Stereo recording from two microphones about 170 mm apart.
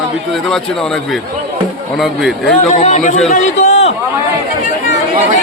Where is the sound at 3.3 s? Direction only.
40° left (ahead or behind).